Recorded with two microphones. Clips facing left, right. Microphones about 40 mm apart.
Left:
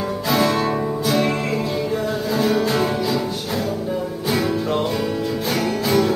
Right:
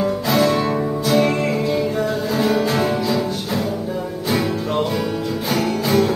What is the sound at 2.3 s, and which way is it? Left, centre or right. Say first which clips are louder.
Music: even; centre.